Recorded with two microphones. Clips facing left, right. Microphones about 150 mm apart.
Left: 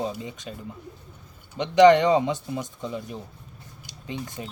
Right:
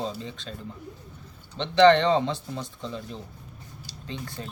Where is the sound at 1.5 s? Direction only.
15° left (ahead or behind).